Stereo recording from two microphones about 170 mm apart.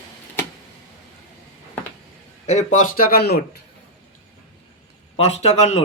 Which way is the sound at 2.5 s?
45° left (ahead or behind).